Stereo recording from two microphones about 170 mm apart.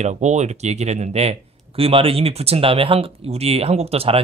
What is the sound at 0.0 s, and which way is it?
Speech, 45° right (ahead or behind).